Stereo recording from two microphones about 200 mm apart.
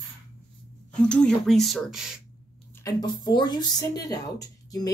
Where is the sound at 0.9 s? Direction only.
5° left (ahead or behind).